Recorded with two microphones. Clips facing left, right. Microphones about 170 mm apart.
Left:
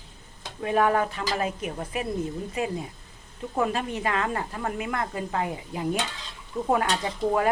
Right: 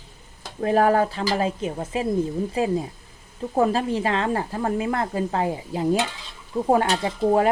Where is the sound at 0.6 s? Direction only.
35° right (ahead or behind).